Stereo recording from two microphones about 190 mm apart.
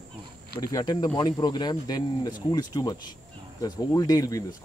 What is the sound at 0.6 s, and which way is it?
Speech, 20° left (ahead or behind).